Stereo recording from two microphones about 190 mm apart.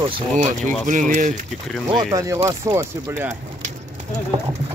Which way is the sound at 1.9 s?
30° right (ahead or behind).